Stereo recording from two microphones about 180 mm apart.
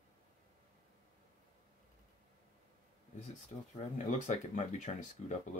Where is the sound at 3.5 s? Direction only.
35° left (ahead or behind).